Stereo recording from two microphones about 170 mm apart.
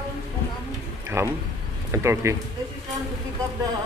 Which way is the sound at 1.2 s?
15° right (ahead or behind).